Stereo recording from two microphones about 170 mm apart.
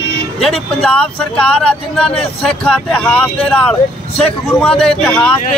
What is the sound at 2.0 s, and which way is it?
Speech, 35° left (ahead or behind).